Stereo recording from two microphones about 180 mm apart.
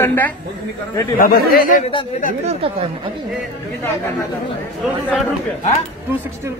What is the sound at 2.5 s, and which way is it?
Speech, 35° right (ahead or behind).